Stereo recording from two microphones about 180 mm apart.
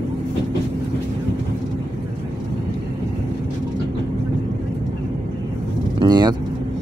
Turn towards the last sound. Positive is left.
turn(degrees=-25)  # may be behind; listen again after turning